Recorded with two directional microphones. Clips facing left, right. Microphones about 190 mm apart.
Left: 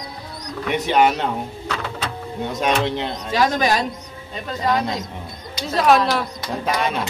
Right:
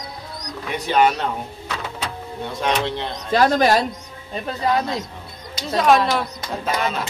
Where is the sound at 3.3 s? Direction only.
45° right (ahead or behind).